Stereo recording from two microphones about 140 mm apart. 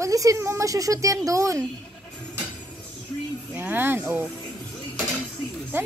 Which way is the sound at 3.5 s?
15° right (ahead or behind).